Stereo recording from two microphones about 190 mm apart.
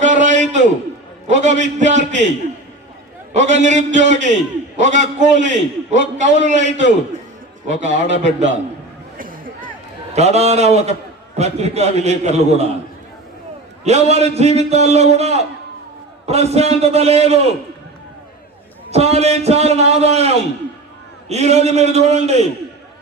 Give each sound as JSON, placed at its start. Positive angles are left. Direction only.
{"t": 0.0, "sound": "a sound", "side_deg": -40}
{"t": 1.4, "sound": "a man's voice", "side_deg": -40}
{"t": 3.3, "sound": "a man's voice", "side_deg": -40}
{"t": 9.1, "sound": "a sound", "side_deg": -45}
{"t": 10.2, "sound": "a man's voice", "side_deg": -35}
{"t": 13.8, "sound": "a man's voice", "side_deg": -35}
{"t": 18.9, "sound": "a man's voice", "side_deg": -35}